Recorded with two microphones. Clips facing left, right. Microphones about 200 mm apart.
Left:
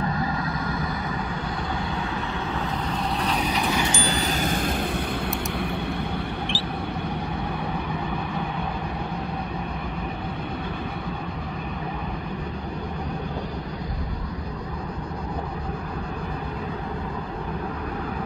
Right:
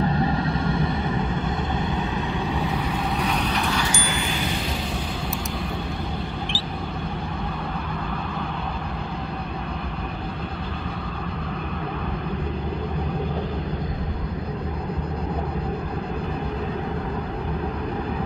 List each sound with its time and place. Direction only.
0.0 s vehicle: 30° right (ahead or behind)
3.2 s vehicle: 5° left (ahead or behind)
3.9 s wind chime: 35° left (ahead or behind)
6.5 s vehicle: centre (ahead or behind)